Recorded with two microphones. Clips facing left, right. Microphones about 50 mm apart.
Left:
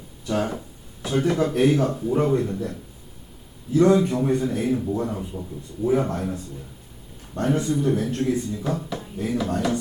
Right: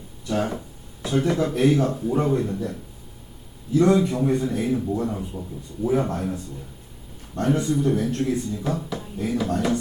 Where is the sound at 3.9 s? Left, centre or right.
Centre.